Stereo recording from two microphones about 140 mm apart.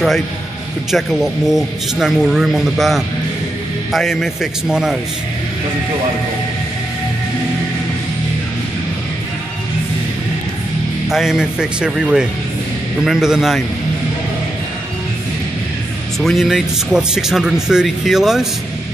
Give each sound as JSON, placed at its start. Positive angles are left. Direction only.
{"t": 0.9, "sound": "speech", "side_deg": 0}
{"t": 11.1, "sound": "speech", "side_deg": -5}
{"t": 16.2, "sound": "speech", "side_deg": 0}